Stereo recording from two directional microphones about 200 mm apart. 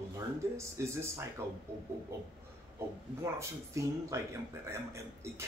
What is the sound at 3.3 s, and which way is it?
Speech, 15° right (ahead or behind).